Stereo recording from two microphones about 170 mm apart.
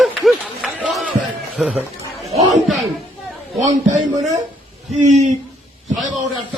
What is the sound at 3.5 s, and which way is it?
A man's voice, 45° right (ahead or behind).